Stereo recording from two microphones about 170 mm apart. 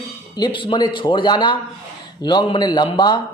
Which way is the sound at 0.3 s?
25° left (ahead or behind).